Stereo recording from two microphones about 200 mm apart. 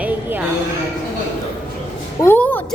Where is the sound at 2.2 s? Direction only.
10° left (ahead or behind).